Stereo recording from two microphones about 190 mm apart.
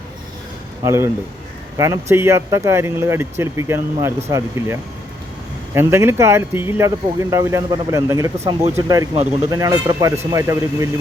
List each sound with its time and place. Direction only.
0.9 s speech: 15° right (ahead or behind)